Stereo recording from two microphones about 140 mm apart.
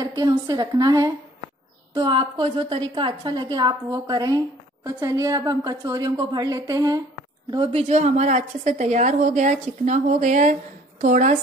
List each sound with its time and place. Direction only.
0.0 s a woman's voice: 30° right (ahead or behind)
7.5 s a woman's voice: 40° right (ahead or behind)
7.9 s a woman's voice: 55° right (ahead or behind)